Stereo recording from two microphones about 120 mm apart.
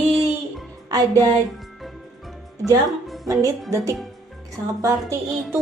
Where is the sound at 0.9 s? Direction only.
30° right (ahead or behind).